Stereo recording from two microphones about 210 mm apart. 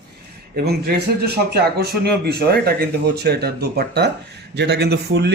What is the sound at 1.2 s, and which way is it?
Speech, 50° right (ahead or behind).